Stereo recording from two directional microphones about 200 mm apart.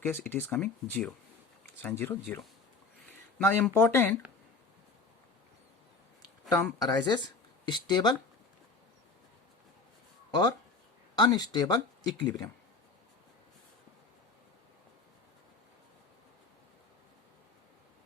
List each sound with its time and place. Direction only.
0.0 s speech: 10° left (ahead or behind)
3.3 s speech: 10° left (ahead or behind)
6.5 s speech: 10° left (ahead or behind)
11.1 s speech: 20° left (ahead or behind)